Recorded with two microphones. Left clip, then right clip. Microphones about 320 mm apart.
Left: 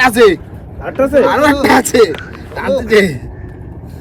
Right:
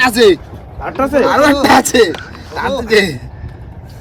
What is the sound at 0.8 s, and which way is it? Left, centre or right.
Speech, centre.